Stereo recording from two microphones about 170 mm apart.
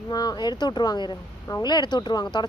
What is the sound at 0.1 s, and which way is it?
Speech, 25° left (ahead or behind).